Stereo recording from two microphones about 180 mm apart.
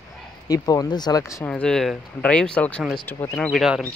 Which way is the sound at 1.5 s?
5° left (ahead or behind).